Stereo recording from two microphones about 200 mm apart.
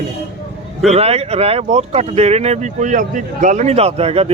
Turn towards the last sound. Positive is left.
turn(degrees=-30)  # may be behind; listen again after turning